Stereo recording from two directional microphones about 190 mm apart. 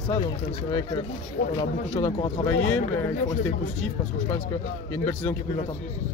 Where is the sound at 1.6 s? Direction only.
20° left (ahead or behind).